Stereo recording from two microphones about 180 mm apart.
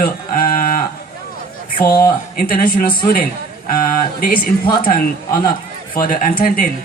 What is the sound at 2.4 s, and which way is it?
Speech, 50° left (ahead or behind).